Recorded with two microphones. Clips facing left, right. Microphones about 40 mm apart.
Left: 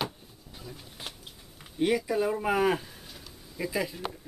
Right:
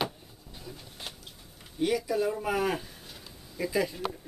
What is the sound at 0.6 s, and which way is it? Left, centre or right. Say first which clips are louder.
Vehicle: even; centre.